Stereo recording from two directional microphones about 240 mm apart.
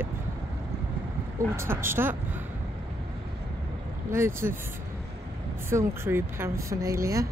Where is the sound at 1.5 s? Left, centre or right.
Centre.